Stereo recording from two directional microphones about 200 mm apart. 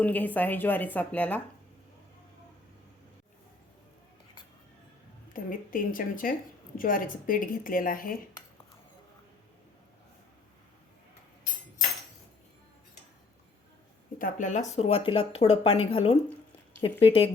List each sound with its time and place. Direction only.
0.0 s a woman's voice: 10° left (ahead or behind)
5.3 s a woman's voice: 45° left (ahead or behind)
14.2 s speech: 40° left (ahead or behind)